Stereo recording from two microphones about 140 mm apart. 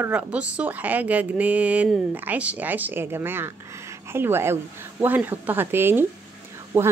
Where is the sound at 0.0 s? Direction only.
10° right (ahead or behind).